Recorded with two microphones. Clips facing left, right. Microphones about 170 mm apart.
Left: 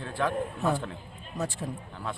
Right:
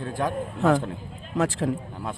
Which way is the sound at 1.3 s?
90° right.